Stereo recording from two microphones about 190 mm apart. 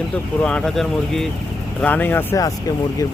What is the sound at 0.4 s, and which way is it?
Speech, 5° left (ahead or behind).